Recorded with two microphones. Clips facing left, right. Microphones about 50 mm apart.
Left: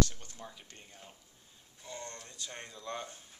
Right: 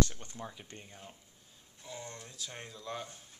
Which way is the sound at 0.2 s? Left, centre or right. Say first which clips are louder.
Right 4 dB; right.